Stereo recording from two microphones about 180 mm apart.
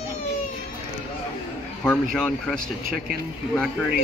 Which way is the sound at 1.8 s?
5° left (ahead or behind).